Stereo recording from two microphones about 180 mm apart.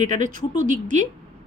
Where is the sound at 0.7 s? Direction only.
45° right (ahead or behind).